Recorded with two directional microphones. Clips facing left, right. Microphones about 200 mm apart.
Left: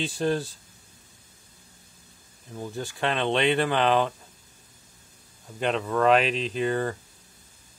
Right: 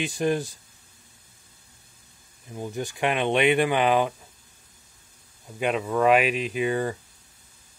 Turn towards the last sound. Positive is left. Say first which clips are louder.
# right 1 dB
turn(degrees=-10)  # may be behind; listen again after turning